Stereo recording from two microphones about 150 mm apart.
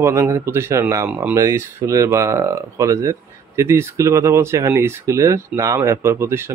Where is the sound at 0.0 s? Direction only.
20° right (ahead or behind).